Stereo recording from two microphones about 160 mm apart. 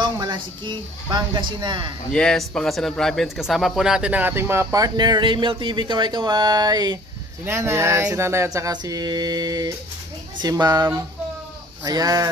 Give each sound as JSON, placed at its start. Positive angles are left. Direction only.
{"t": 0.2, "sound": "a sound", "side_deg": -25}
{"t": 1.0, "sound": "mantra", "side_deg": -30}
{"t": 2.1, "sound": "speech", "side_deg": 5}
{"t": 7.4, "sound": "mantra", "side_deg": -15}